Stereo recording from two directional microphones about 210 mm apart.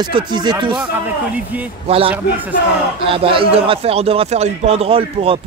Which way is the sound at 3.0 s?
25° right (ahead or behind).